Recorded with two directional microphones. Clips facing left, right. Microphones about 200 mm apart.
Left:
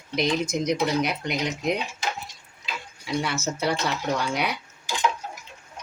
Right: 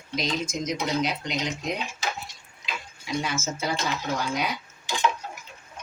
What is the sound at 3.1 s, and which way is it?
Speech, 65° left (ahead or behind).